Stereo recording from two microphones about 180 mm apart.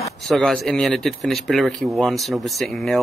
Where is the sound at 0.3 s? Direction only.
5° left (ahead or behind).